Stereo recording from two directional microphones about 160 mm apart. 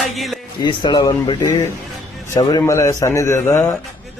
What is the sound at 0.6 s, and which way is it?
Speech, 30° left (ahead or behind).